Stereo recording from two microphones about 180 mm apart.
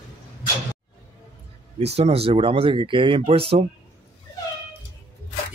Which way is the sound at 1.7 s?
35° right (ahead or behind).